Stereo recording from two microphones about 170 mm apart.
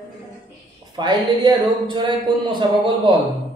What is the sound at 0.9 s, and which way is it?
Speech, 25° right (ahead or behind).